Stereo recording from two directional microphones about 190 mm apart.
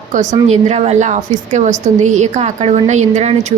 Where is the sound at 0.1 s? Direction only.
40° right (ahead or behind).